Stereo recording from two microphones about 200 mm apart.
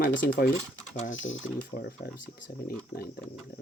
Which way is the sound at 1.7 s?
50° left (ahead or behind).